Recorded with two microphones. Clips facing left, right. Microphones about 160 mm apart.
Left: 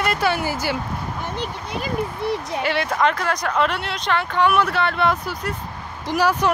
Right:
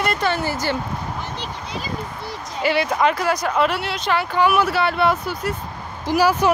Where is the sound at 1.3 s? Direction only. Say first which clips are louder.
Left 2 dB; 55° left (ahead or behind).